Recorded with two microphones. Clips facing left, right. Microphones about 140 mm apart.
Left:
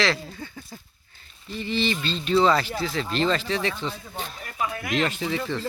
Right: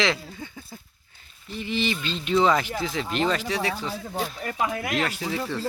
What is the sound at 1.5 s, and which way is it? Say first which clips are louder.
Speech: left 1 dB; 15° right (ahead or behind).